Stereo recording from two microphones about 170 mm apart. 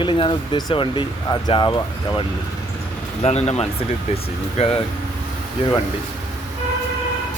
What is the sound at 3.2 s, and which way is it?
Speech, 40° left (ahead or behind).